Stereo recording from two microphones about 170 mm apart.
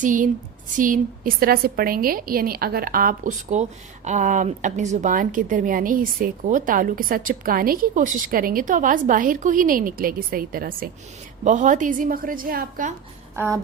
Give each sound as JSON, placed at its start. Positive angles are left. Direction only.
{"t": 0.0, "sound": "a woman's voice", "side_deg": -50}
{"t": 11.4, "sound": "a woman's voice", "side_deg": -45}
{"t": 13.3, "sound": "speech", "side_deg": -15}